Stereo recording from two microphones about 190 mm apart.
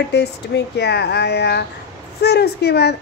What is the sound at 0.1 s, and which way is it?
Speech, 60° left (ahead or behind).